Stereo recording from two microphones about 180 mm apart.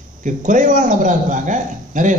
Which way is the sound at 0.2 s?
45° right (ahead or behind).